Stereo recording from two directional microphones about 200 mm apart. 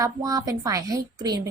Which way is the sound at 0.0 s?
20° right (ahead or behind).